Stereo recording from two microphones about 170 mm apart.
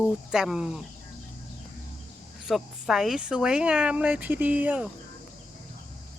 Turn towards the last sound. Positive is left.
turn(degrees=-10)  # may be behind; listen again after turning